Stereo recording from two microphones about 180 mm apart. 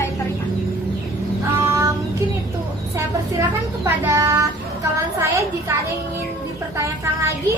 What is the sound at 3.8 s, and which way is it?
Child singing, 15° right (ahead or behind).